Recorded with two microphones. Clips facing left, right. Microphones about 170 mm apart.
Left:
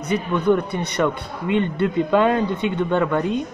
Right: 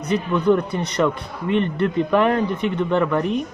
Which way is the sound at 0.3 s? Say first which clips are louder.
Right 1 dB; 20° left (ahead or behind).